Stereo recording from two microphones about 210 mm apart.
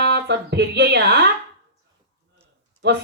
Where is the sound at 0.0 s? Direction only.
55° right (ahead or behind).